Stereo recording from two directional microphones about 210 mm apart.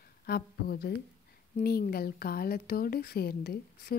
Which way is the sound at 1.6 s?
45° left (ahead or behind).